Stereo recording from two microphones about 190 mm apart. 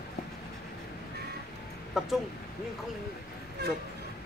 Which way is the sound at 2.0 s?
Centre (ahead or behind).